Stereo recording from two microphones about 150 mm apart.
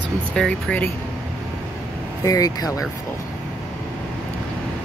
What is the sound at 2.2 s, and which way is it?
Speech, 25° left (ahead or behind).